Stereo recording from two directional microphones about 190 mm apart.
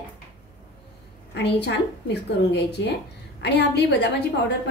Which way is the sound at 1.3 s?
65° left (ahead or behind).